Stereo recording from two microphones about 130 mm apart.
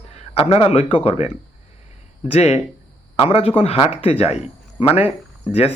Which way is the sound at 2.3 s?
55° left (ahead or behind).